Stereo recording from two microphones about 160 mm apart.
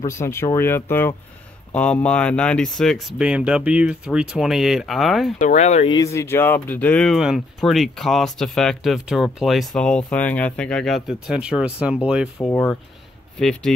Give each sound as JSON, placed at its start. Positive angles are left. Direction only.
{"t": 0.0, "sound": "speech", "side_deg": 15}
{"t": 5.4, "sound": "speech", "side_deg": 50}
{"t": 5.9, "sound": "speech", "side_deg": 20}
{"t": 12.4, "sound": "speech", "side_deg": 15}
{"t": 13.4, "sound": "speech", "side_deg": 5}